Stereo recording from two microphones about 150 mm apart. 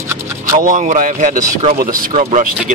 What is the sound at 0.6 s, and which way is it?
Speech, 60° right (ahead or behind).